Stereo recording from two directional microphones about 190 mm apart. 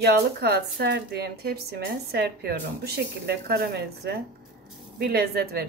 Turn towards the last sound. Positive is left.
turn(degrees=-55)  # may be behind; listen again after turning